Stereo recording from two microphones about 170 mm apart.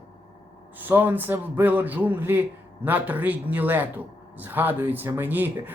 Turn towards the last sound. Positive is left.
turn(degrees=-10)  # may be behind; listen again after turning